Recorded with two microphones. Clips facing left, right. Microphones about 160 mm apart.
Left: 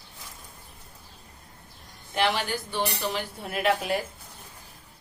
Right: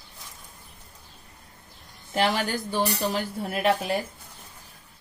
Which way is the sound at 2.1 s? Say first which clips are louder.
Right 2 dB; 45° right (ahead or behind).